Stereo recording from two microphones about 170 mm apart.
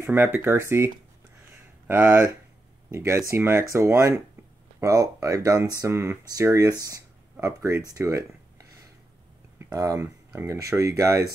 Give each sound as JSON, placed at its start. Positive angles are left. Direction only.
{"t": 0.0, "sound": "speech", "side_deg": -10}